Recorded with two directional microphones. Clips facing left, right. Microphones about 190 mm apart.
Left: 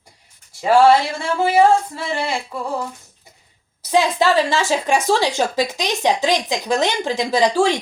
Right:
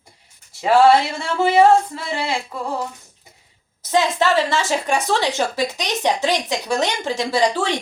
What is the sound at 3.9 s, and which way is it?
A woman's voice, 15° left (ahead or behind).